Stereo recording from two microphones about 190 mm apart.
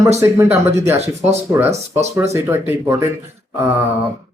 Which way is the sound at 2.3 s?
15° right (ahead or behind).